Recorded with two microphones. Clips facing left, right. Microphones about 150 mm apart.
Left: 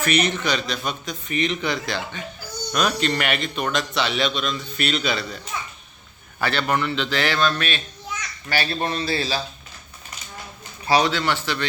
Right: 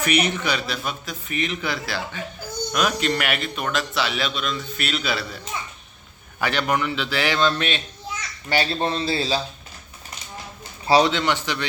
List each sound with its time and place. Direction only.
0.0 s a man's voice: 10° right (ahead or behind)
6.4 s a man's voice: 15° right (ahead or behind)
10.8 s speech: 25° right (ahead or behind)